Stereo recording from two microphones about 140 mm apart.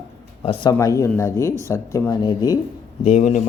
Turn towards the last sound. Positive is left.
turn(degrees=60)  # may be behind; listen again after turning